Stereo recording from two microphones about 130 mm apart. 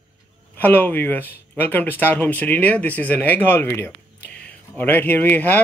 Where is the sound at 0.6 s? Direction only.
15° left (ahead or behind).